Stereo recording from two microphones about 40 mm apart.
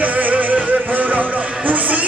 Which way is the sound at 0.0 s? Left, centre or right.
Right.